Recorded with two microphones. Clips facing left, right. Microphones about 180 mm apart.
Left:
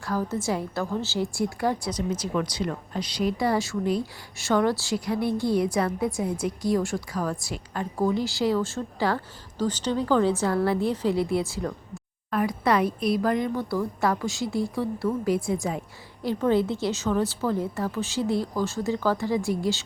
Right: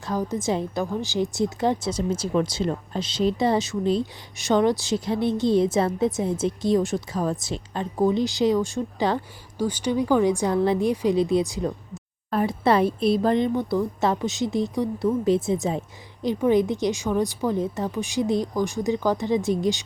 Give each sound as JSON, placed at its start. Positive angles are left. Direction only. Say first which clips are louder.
{"t": 0.0, "sound": "a woman's voice", "louder": "right 2 dB", "side_deg": -20}